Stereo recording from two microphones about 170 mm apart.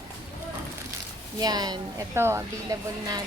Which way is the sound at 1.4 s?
25° right (ahead or behind).